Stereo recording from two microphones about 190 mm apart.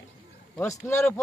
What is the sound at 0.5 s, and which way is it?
Speech, 15° left (ahead or behind).